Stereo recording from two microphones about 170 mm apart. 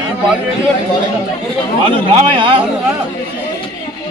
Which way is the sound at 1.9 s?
30° right (ahead or behind).